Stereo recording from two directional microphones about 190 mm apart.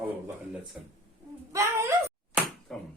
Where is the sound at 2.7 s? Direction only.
5° left (ahead or behind).